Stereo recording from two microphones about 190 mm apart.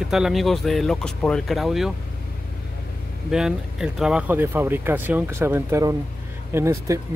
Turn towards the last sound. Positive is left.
turn(degrees=-15)  # may be behind; listen again after turning